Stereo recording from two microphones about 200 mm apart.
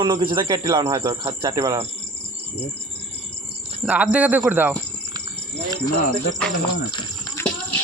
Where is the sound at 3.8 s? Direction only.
5° right (ahead or behind).